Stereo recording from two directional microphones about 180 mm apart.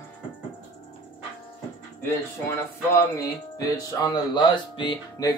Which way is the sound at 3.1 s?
20° left (ahead or behind).